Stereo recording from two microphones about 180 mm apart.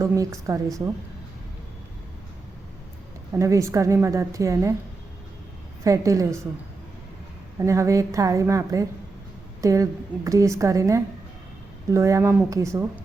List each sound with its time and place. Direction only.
0.0 s a woman's voice: 15° right (ahead or behind)
3.3 s a woman's voice: 15° right (ahead or behind)
5.8 s a woman's voice: 15° right (ahead or behind)
7.6 s a woman's voice: 15° right (ahead or behind)